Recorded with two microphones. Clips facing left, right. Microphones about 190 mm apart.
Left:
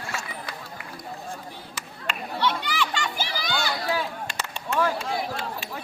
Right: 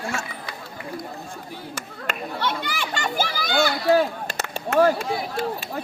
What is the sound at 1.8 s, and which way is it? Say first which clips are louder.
Children playing: right 2 dB; 45° right (ahead or behind).